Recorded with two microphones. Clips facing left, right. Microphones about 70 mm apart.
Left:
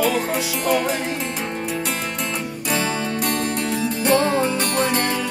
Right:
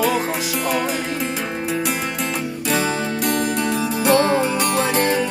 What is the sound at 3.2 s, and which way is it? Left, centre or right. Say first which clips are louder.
Music: right 5 dB; centre.